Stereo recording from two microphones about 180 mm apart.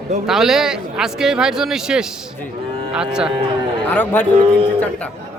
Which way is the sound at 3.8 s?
10° left (ahead or behind).